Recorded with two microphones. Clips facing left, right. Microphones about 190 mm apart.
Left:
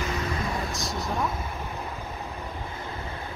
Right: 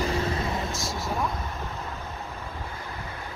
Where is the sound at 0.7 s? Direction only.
Centre (ahead or behind).